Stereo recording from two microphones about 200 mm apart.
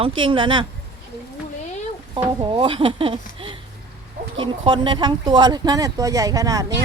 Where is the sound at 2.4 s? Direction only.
25° right (ahead or behind).